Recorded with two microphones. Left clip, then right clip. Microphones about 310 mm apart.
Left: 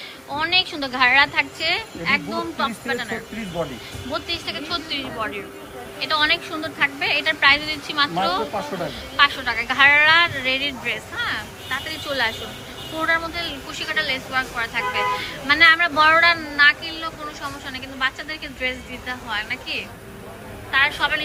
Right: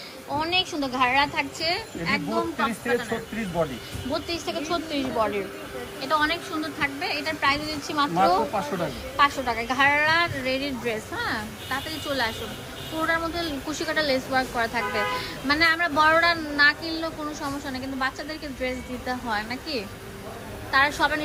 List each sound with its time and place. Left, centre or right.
0.3 s speech: centre
4.1 s speech: centre
9.1 s speech: centre